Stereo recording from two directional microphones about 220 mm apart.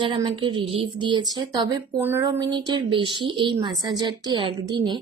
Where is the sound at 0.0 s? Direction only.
20° right (ahead or behind).